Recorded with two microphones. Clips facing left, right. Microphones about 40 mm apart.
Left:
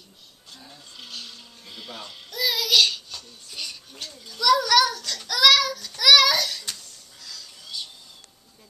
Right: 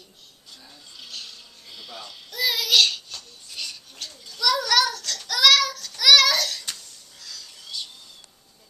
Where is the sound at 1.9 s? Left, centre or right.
Left.